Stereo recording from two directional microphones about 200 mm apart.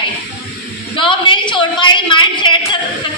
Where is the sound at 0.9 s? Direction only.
25° left (ahead or behind).